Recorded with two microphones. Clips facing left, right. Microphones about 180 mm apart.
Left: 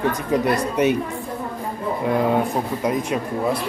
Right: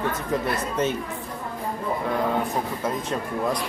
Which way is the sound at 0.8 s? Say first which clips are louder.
Left 6 dB; 15° left (ahead or behind).